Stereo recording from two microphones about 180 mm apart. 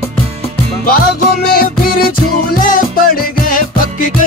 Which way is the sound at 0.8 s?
55° left (ahead or behind).